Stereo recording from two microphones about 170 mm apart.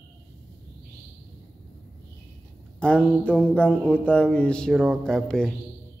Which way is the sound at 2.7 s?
5° left (ahead or behind).